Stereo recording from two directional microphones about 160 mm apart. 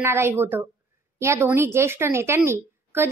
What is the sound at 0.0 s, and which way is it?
A woman's voice, 15° right (ahead or behind).